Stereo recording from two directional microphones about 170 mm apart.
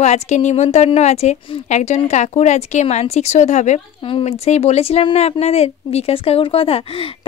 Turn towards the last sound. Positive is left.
turn(degrees=35)  # may be behind; listen again after turning